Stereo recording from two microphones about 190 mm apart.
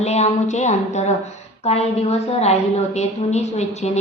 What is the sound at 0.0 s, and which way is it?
A woman's voice, 35° left (ahead or behind).